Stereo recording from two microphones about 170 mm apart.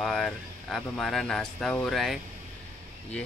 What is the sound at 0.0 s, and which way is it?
Speech, centre (ahead or behind).